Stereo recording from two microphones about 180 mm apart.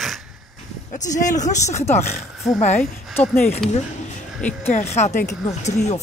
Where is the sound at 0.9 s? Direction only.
45° left (ahead or behind).